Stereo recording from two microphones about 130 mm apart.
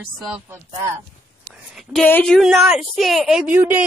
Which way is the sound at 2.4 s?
5° right (ahead or behind).